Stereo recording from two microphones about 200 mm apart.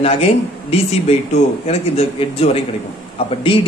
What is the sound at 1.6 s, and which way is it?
A man's voice, 30° left (ahead or behind).